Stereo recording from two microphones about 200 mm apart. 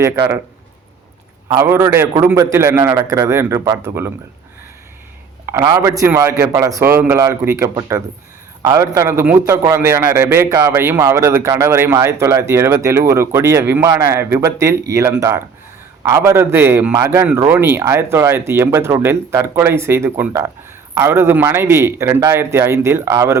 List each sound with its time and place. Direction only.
1.5 s a man's voice: 15° right (ahead or behind)
5.5 s a man's voice: 15° right (ahead or behind)